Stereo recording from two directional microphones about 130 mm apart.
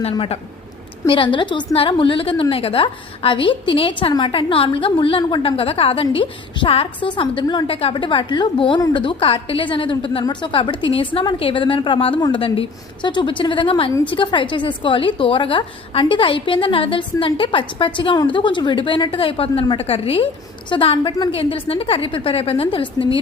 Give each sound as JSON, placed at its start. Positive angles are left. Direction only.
{"t": 0.0, "sound": "a woman's voice", "side_deg": 50}